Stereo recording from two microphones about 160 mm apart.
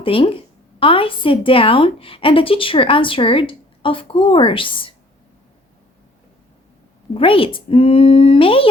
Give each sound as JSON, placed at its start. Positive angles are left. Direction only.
{"t": 0.0, "sound": "a woman's voice", "side_deg": 35}
{"t": 7.1, "sound": "a woman's voice", "side_deg": 35}